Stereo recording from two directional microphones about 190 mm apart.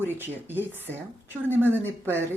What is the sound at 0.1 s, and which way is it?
Speech, 10° right (ahead or behind).